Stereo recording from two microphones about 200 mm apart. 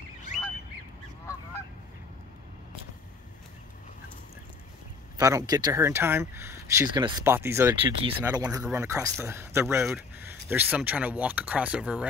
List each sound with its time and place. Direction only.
5.1 s speech: 15° right (ahead or behind)
7.8 s speech: 25° right (ahead or behind); by 12.1 s 5° right (ahead or behind)